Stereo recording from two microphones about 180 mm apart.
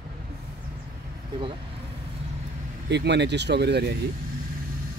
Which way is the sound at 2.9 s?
75° right (ahead or behind).